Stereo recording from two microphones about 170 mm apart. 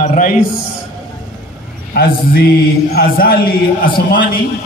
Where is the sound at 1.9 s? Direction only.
60° left (ahead or behind).